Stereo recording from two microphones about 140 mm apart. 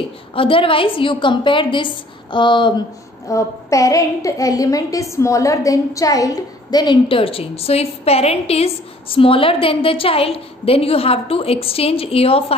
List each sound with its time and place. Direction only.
0.3 s a woman's voice: 40° left (ahead or behind)
3.3 s a woman's voice: 20° left (ahead or behind); by 12.5 s 45° left (ahead or behind)